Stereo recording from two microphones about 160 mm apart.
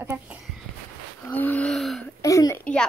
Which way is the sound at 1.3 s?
10° left (ahead or behind).